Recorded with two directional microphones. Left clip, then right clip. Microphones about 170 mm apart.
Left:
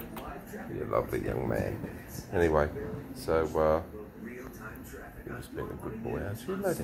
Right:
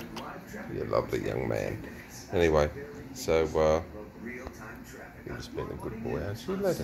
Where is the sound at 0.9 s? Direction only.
5° right (ahead or behind).